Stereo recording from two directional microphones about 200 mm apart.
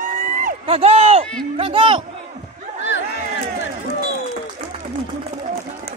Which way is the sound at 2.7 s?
65° left (ahead or behind).